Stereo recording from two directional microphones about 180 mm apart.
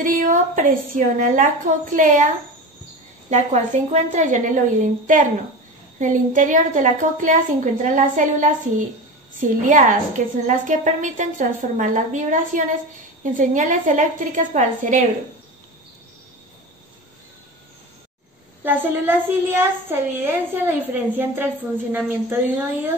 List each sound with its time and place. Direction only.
0.0 s a woman's voice: 45° right (ahead or behind)
18.6 s a woman's voice: 10° right (ahead or behind)